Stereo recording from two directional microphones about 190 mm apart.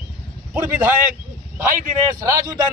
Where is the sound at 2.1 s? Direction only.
20° right (ahead or behind).